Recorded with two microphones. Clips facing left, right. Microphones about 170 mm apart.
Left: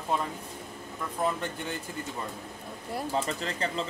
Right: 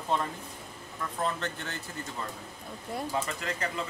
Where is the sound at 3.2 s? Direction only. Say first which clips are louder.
Left 2 dB; 30° left (ahead or behind).